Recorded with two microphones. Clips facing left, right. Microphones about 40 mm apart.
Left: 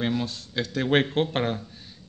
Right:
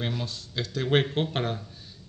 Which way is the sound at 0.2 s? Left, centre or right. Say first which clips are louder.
Left 4 dB; left.